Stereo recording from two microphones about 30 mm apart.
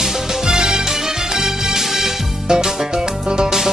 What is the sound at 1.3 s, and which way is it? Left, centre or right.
Music, centre.